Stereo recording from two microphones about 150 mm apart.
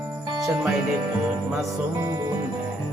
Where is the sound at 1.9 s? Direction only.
20° right (ahead or behind).